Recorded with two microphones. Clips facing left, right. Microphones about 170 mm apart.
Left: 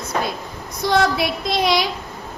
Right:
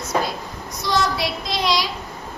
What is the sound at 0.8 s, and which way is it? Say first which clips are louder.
Speech: left 4 dB; 55° left (ahead or behind).